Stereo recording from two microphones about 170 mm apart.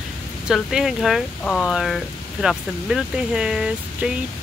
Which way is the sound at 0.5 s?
5° right (ahead or behind).